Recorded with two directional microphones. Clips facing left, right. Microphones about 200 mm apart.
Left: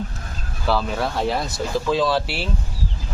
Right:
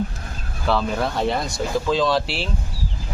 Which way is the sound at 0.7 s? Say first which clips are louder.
Right 1 dB; centre (ahead or behind).